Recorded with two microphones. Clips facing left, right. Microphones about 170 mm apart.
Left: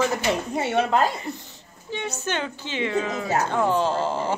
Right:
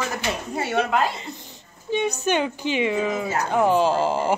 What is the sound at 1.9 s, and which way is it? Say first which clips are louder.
Speech: right 6 dB; 15° right (ahead or behind).